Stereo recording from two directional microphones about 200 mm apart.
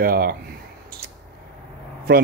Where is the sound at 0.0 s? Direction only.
45° right (ahead or behind).